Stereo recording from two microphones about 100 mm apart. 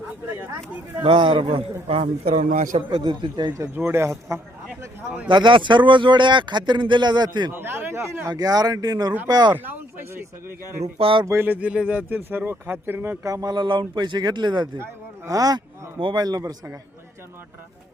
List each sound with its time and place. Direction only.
1.0 s a man's voice: 55° right (ahead or behind); by 2.0 s 70° right (ahead or behind)
3.0 s speech: 50° right (ahead or behind)
3.8 s speech: 20° right (ahead or behind)
5.3 s speech: 55° right (ahead or behind)
7.5 s speech: 20° right (ahead or behind)
8.3 s speech: 40° right (ahead or behind)
10.9 s a man's voice: 65° right (ahead or behind)
11.3 s speech: 20° right (ahead or behind)
13.2 s speech: 35° right (ahead or behind)
15.3 s speech: 40° right (ahead or behind)
16.0 s a man's voice: 55° right (ahead or behind)
16.2 s speech: 40° right (ahead or behind)